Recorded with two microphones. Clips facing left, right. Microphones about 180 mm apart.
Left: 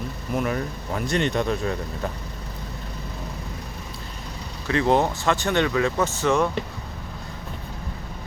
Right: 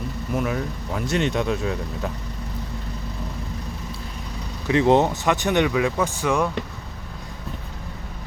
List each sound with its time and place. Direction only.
0.3 s speech: centre (ahead or behind)
4.7 s speech: 20° right (ahead or behind)